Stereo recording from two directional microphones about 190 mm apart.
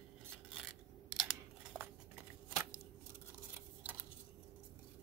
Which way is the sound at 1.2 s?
5° right (ahead or behind).